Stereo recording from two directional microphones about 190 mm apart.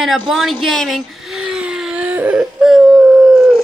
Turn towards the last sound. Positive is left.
turn(degrees=0)  # may be behind; listen again after turning